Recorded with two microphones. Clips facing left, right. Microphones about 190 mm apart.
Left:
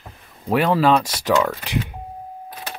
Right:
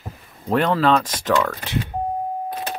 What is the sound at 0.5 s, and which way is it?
Speech, 10° left (ahead or behind).